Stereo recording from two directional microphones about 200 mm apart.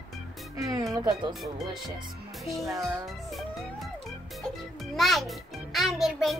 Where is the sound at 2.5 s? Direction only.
Centre (ahead or behind).